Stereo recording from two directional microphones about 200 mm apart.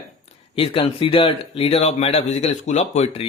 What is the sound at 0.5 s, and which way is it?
Speech, 25° left (ahead or behind).